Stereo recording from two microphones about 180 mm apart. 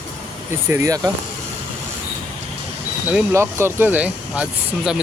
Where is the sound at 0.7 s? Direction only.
15° right (ahead or behind).